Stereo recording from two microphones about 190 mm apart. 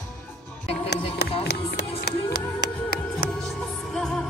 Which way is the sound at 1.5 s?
60° left (ahead or behind).